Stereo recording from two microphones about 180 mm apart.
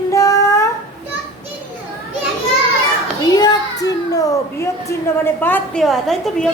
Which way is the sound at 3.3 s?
20° left (ahead or behind).